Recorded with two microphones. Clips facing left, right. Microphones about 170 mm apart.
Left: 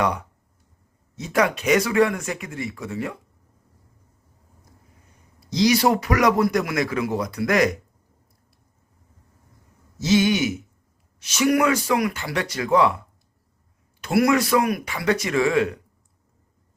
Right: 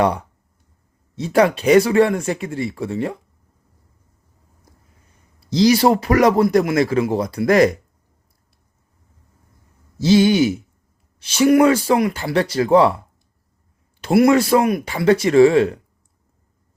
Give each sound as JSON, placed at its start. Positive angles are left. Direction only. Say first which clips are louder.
{"t": 0.0, "sound": "speech", "louder": "right 5 dB", "side_deg": -30}
{"t": 5.5, "sound": "speech", "louder": "right 5 dB", "side_deg": -30}
{"t": 10.0, "sound": "speech", "louder": "right 6 dB", "side_deg": -30}
{"t": 14.0, "sound": "speech", "louder": "right 5 dB", "side_deg": -25}